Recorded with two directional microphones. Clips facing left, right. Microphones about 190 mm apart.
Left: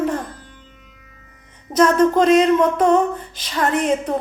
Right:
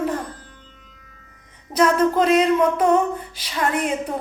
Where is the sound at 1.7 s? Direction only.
10° right (ahead or behind).